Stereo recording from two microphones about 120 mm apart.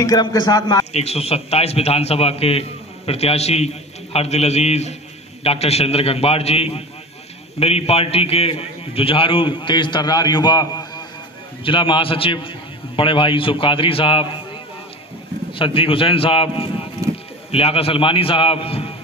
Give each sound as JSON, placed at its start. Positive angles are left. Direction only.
{"t": 0.0, "sound": "speech", "side_deg": 30}
{"t": 0.9, "sound": "a man's voice", "side_deg": 60}
{"t": 11.6, "sound": "a man's voice", "side_deg": 45}
{"t": 15.5, "sound": "a man's voice", "side_deg": 45}